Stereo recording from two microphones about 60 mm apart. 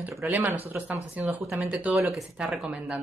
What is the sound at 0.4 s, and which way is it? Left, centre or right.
Speech, right.